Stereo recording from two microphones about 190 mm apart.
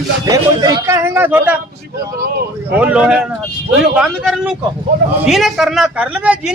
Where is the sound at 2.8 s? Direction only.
5° right (ahead or behind).